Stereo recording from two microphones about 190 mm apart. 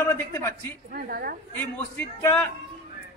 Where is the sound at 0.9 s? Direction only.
50° right (ahead or behind).